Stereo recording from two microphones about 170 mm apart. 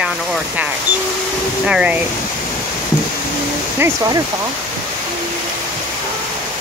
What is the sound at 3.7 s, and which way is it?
Speech, 20° right (ahead or behind).